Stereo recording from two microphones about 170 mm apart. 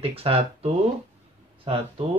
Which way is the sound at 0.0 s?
35° right (ahead or behind).